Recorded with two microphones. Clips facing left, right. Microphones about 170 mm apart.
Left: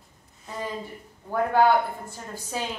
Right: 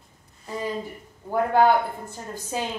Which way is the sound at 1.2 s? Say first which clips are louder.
Right 1 dB; 15° right (ahead or behind).